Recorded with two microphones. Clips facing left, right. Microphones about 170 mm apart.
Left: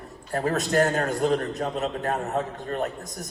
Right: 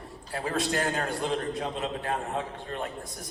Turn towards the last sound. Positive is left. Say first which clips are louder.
# left 5 dB
turn(degrees=45)  # may be behind; listen again after turning